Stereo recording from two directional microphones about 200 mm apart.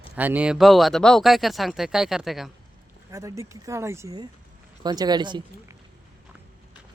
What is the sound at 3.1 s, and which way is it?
Speech, 15° right (ahead or behind).